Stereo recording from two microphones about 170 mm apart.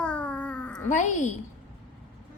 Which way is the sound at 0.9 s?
45° left (ahead or behind).